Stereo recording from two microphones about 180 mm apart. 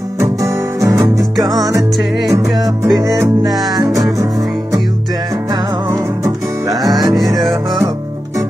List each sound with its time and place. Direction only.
0.2 s music: 15° right (ahead or behind)
5.9 s music: 20° right (ahead or behind)
7.2 s music: centre (ahead or behind)